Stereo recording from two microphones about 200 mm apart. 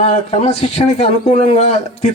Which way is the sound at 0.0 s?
30° left (ahead or behind).